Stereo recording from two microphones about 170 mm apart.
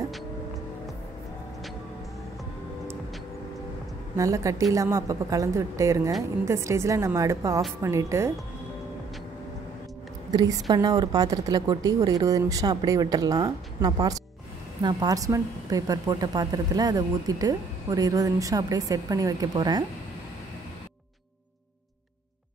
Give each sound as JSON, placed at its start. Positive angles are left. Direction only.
{"t": 4.2, "sound": "a woman's voice", "side_deg": -20}
{"t": 10.3, "sound": "speech", "side_deg": -20}